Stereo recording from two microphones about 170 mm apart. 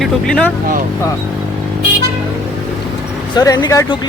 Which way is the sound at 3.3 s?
20° left (ahead or behind).